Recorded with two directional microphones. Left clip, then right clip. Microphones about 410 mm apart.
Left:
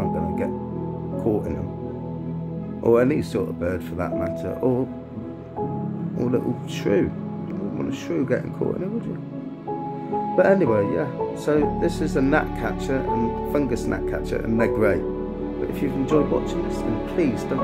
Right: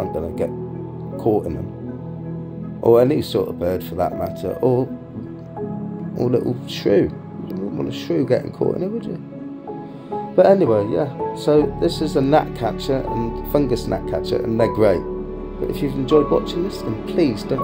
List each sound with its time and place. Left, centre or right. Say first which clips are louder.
1.3 s speech: right 5 dB; centre
2.8 s speech: right 5 dB; centre
6.1 s speech: right 5 dB; centre
10.3 s speech: right 5 dB; centre